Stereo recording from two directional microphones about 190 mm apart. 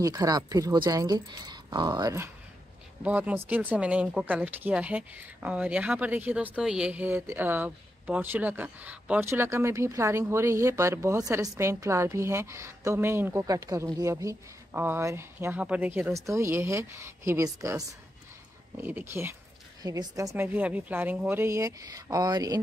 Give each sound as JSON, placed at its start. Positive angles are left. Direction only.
{"t": 0.0, "sound": "speech", "side_deg": -20}